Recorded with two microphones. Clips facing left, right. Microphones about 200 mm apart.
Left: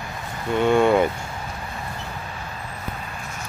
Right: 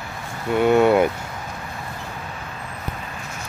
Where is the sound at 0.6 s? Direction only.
5° right (ahead or behind).